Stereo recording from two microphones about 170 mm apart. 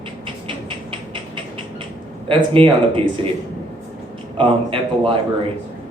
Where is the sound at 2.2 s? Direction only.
30° right (ahead or behind).